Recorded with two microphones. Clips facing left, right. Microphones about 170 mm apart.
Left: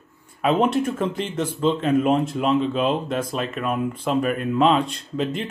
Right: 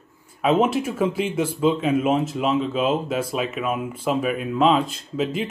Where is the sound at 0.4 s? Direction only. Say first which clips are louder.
Even; centre (ahead or behind).